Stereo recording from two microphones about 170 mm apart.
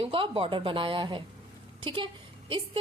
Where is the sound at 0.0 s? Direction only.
30° right (ahead or behind).